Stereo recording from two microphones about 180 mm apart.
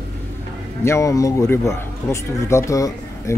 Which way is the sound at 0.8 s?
15° left (ahead or behind).